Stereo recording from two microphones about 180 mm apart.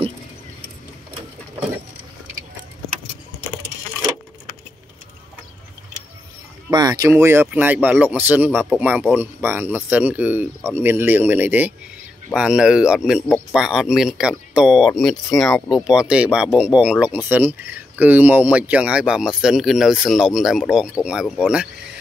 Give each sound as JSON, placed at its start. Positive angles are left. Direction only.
{"t": 6.7, "sound": "speech", "side_deg": -20}